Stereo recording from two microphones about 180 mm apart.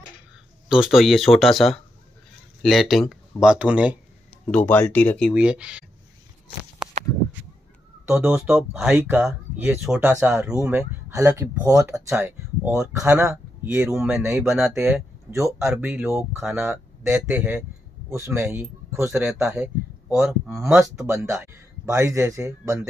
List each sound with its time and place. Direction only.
0.7 s speech: 5° right (ahead or behind)
4.5 s speech: 10° left (ahead or behind)
5.3 s speech: 5° right (ahead or behind)
6.8 s a sound: 5° right (ahead or behind)
8.1 s speech: 5° right (ahead or behind)
13.3 s speech: 5° right (ahead or behind)
21.8 s speech: 15° right (ahead or behind)